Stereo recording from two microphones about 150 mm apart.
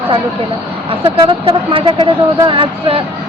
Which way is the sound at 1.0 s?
40° right (ahead or behind).